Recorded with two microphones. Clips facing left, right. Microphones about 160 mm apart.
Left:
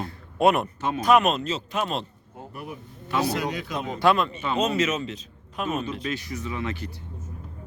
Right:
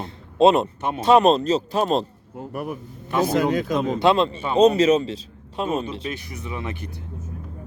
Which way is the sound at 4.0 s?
25° right (ahead or behind).